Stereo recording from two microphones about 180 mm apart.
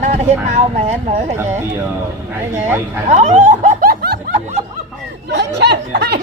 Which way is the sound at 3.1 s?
40° right (ahead or behind).